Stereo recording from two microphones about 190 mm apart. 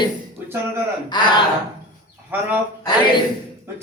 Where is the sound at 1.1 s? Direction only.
25° left (ahead or behind).